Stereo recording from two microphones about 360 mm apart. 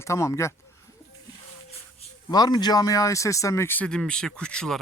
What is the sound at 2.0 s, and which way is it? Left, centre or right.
A man's voice, centre.